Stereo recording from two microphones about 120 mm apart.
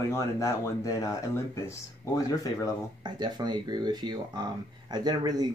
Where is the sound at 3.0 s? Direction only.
35° right (ahead or behind).